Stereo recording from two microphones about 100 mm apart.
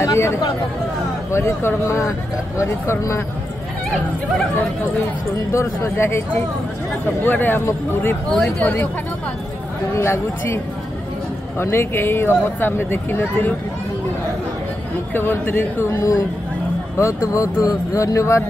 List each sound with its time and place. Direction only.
0.0 s speech: 30° left (ahead or behind)
5.5 s speech: 30° left (ahead or behind)
8.3 s speech: 5° left (ahead or behind)
9.9 s speech: 25° left (ahead or behind)
15.1 s speech: 20° left (ahead or behind)